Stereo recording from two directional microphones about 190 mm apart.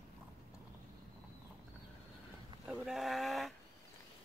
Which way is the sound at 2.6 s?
Centre (ahead or behind).